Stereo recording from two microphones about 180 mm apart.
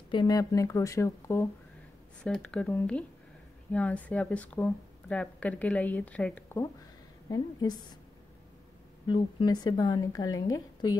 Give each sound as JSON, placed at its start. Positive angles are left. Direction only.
{"t": 0.1, "sound": "speech", "side_deg": 20}
{"t": 2.2, "sound": "speech", "side_deg": 5}
{"t": 7.2, "sound": "a woman's voice", "side_deg": 20}
{"t": 9.0, "sound": "a woman's voice", "side_deg": 25}